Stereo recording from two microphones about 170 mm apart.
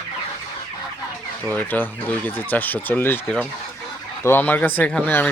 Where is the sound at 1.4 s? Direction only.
10° left (ahead or behind).